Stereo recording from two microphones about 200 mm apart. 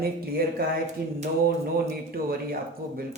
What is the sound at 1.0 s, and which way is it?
Speech, 50° right (ahead or behind).